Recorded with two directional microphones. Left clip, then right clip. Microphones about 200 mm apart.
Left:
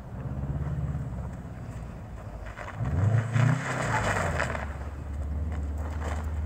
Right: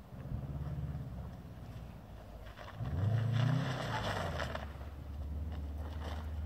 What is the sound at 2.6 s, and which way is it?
Vehicle, centre (ahead or behind).